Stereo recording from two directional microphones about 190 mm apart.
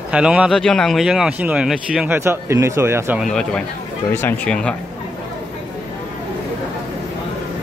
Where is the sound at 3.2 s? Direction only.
5° left (ahead or behind).